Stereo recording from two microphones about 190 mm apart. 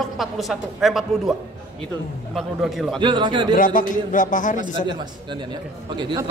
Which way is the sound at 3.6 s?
45° left (ahead or behind).